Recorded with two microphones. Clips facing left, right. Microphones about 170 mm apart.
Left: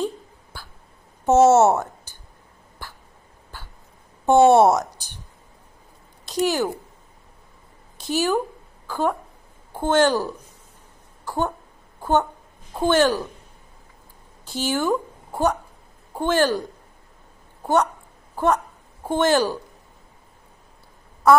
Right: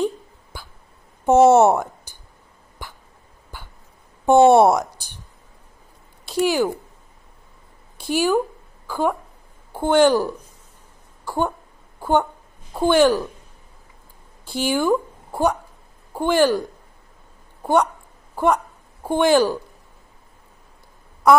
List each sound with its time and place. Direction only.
0.0 s a sound: 15° right (ahead or behind)
1.2 s a woman's voice: 15° right (ahead or behind)
2.1 s whispering: 10° right (ahead or behind)
2.8 s throat clearing: 15° right (ahead or behind)
3.5 s dog: 15° right (ahead or behind)
4.3 s a woman's voice: 15° right (ahead or behind)
6.4 s a woman's voice: 10° right (ahead or behind)
8.0 s a woman's voice: 10° right (ahead or behind)
11.2 s a sound: 10° right (ahead or behind)
12.0 s a woman's voice: 10° right (ahead or behind)
14.4 s a woman's voice: 10° right (ahead or behind)
18.3 s a woman's voice: 10° right (ahead or behind)
21.2 s a sound: 15° right (ahead or behind)